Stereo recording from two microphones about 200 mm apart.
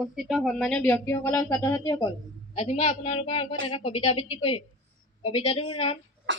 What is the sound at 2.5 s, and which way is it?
A man's voice, 30° left (ahead or behind).